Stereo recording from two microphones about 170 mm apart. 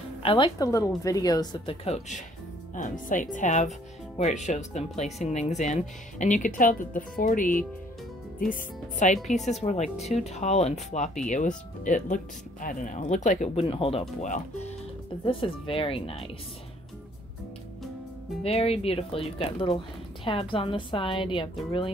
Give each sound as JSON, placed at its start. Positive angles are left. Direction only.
{"t": 0.2, "sound": "a woman's voice", "side_deg": 30}
{"t": 1.9, "sound": "a woman's voice", "side_deg": 45}
{"t": 18.4, "sound": "a woman's voice", "side_deg": 35}